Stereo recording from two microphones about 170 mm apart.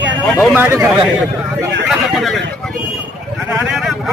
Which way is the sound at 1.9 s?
Centre (ahead or behind).